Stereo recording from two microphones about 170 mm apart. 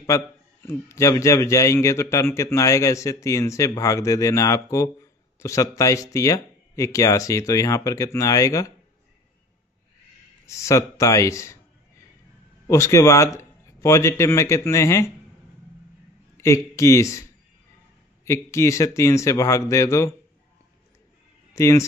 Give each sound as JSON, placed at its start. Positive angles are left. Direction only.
{"t": 0.0, "sound": "a man's voice", "side_deg": 15}
{"t": 10.4, "sound": "speech", "side_deg": 15}
{"t": 12.6, "sound": "speech", "side_deg": 15}
{"t": 16.3, "sound": "a man's voice", "side_deg": 15}
{"t": 21.5, "sound": "speech", "side_deg": 15}